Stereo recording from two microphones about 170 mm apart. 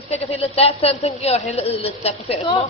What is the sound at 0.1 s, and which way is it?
A woman's voice, 35° left (ahead or behind).